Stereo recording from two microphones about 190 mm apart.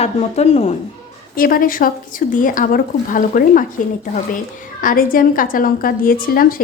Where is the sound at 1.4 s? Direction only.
50° left (ahead or behind).